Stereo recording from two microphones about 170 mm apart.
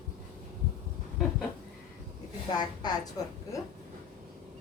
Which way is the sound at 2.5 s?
25° left (ahead or behind).